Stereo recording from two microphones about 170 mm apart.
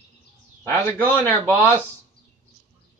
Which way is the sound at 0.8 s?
10° left (ahead or behind).